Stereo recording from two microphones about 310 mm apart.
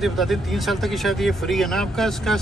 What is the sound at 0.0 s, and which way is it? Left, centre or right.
Speech, centre.